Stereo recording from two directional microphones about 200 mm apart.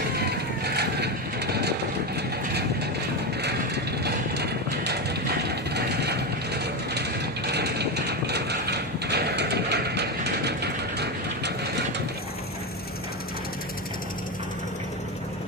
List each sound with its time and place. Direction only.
0.2 s vehicle: 55° right (ahead or behind)
3.4 s mechanisms: 55° right (ahead or behind)